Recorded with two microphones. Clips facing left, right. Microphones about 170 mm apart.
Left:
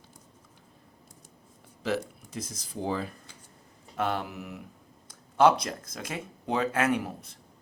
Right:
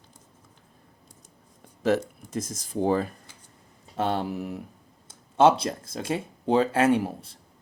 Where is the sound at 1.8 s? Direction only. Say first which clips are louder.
Right 6 dB; 45° right (ahead or behind).